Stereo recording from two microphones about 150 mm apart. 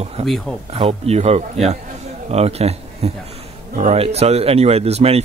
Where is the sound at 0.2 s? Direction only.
45° right (ahead or behind).